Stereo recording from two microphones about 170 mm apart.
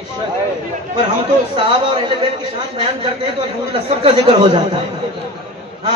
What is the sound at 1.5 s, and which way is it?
Speech, 30° right (ahead or behind).